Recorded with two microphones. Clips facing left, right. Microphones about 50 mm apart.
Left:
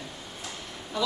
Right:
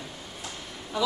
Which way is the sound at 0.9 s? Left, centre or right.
Centre.